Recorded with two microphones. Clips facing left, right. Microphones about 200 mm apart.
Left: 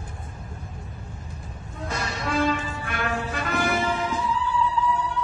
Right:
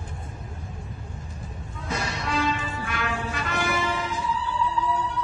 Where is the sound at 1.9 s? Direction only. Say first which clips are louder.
Left 1 dB; 50° left (ahead or behind).